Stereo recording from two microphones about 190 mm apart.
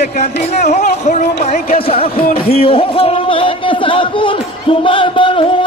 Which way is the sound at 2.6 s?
30° left (ahead or behind).